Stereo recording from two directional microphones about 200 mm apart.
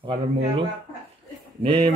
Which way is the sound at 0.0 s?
25° right (ahead or behind).